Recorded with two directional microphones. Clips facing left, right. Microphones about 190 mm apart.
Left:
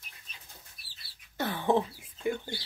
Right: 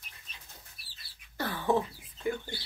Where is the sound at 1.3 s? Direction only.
20° left (ahead or behind).